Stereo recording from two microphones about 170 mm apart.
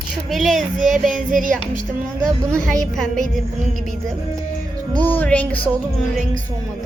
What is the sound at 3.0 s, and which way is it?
Music, 5° left (ahead or behind).